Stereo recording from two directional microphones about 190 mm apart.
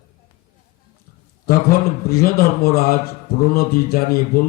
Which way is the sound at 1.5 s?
55° left (ahead or behind).